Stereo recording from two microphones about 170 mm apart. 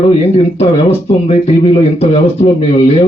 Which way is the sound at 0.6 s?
40° left (ahead or behind).